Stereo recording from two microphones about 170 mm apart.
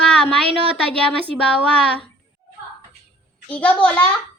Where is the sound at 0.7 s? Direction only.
5° left (ahead or behind).